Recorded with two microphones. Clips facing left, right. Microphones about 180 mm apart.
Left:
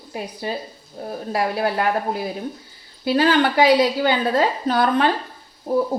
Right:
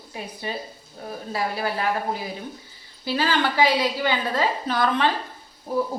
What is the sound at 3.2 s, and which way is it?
A woman's voice, 50° left (ahead or behind).